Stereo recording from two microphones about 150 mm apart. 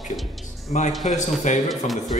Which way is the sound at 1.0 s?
50° left (ahead or behind).